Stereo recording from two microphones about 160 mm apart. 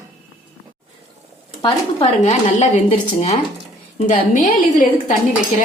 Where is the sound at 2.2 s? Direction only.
45° left (ahead or behind).